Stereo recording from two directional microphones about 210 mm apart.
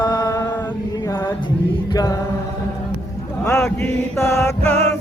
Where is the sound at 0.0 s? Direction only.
20° left (ahead or behind).